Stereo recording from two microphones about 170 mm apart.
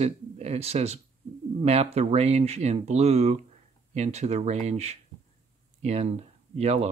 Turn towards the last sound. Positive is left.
turn(degrees=-40)  # may be behind; listen again after turning